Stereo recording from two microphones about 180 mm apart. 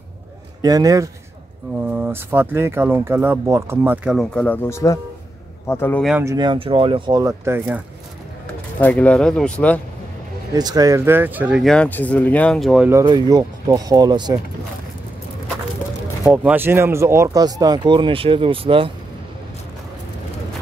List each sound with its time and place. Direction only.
0.6 s a man's voice: 20° right (ahead or behind); by 6.0 s 10° left (ahead or behind)
6.2 s speech: 20° right (ahead or behind)
8.8 s speech: 5° left (ahead or behind)
10.5 s speech: 20° right (ahead or behind); by 12.9 s centre (ahead or behind)
12.9 s speech: 25° right (ahead or behind)
16.3 s speech: 10° right (ahead or behind); by 18.9 s 30° right (ahead or behind)